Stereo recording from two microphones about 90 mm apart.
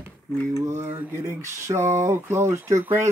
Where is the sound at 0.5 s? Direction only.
35° right (ahead or behind).